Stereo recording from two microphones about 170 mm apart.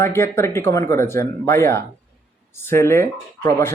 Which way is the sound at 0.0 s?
15° left (ahead or behind).